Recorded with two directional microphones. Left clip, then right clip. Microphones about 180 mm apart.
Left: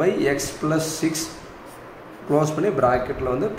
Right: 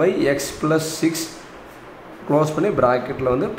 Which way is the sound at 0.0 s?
25° right (ahead or behind).